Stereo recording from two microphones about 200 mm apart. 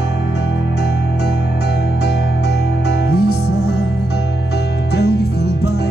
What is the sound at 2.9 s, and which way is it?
Music, 55° left (ahead or behind).